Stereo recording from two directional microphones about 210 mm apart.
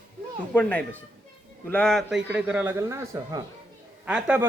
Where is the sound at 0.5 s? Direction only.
10° left (ahead or behind).